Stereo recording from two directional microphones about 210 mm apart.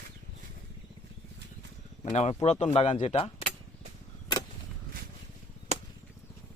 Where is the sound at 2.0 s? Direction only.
35° left (ahead or behind).